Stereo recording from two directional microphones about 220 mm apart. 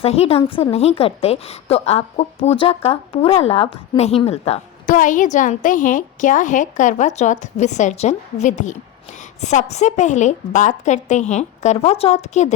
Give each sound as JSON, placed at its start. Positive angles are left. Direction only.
{"t": 0.0, "sound": "a woman's voice", "side_deg": 25}